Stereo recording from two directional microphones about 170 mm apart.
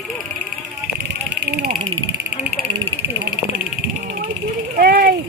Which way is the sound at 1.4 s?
65° right (ahead or behind).